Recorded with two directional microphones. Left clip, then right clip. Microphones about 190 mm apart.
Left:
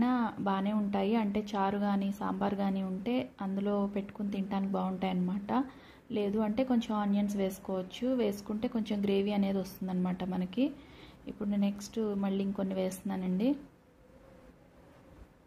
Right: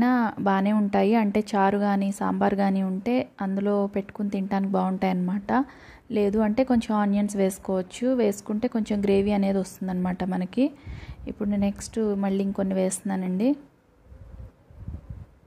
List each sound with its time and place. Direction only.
0.0 s a woman's voice: 30° right (ahead or behind)